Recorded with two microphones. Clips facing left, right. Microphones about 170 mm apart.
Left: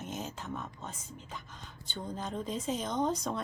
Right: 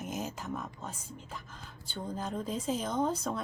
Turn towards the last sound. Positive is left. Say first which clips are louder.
# even
turn(degrees=-5)  # may be behind; listen again after turning